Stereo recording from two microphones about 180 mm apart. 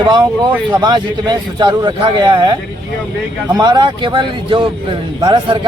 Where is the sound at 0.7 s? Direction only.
25° right (ahead or behind).